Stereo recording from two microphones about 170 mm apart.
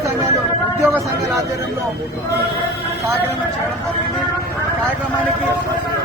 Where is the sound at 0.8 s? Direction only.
15° right (ahead or behind).